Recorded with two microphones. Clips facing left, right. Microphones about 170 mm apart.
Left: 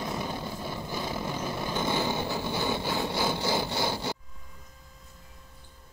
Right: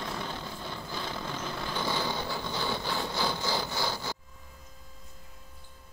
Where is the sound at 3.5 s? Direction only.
20° left (ahead or behind).